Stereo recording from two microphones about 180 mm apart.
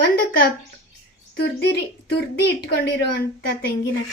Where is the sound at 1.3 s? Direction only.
65° left (ahead or behind).